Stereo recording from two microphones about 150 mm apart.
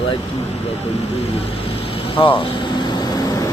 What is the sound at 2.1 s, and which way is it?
Vehicle, 35° left (ahead or behind).